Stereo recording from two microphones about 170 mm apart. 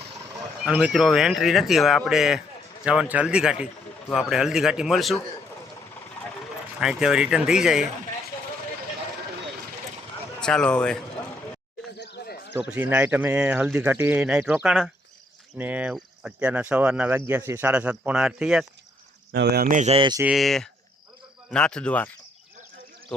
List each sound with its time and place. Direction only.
0.6 s speech: 5° right (ahead or behind)
6.7 s speech: 5° right (ahead or behind)
10.4 s speech: 5° left (ahead or behind)
11.9 s a sound: 80° left
12.5 s speech: 10° right (ahead or behind)
19.3 s speech: 70° right (ahead or behind)
19.7 s speech: 45° right (ahead or behind)
20.0 s speech: 25° right (ahead or behind)
20.2 s speech: centre (ahead or behind)